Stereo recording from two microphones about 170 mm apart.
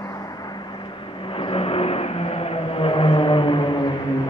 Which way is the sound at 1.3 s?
35° left (ahead or behind).